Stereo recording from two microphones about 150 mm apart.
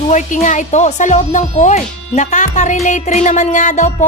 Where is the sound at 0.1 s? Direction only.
55° left (ahead or behind).